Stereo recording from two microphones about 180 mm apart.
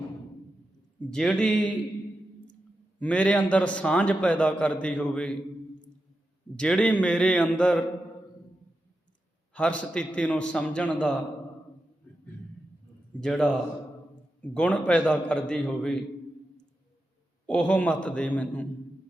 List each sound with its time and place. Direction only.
0.9 s a man's voice: 5° left (ahead or behind)
3.0 s a man's voice: 10° left (ahead or behind)
6.6 s a man's voice: 5° left (ahead or behind)
9.5 s a man's voice: 5° left (ahead or behind)
13.1 s a man's voice: 5° left (ahead or behind)
17.4 s a man's voice: 5° left (ahead or behind)